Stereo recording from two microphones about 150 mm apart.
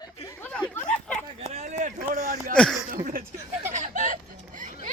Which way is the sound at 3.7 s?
55° right (ahead or behind).